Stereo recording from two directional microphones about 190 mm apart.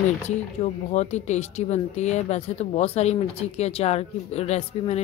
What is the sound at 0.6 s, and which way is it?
Speech, 40° left (ahead or behind).